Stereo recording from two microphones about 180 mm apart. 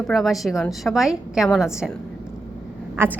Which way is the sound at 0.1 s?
Centre (ahead or behind).